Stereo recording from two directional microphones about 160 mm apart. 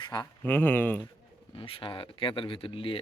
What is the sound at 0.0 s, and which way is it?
Speech, 25° left (ahead or behind).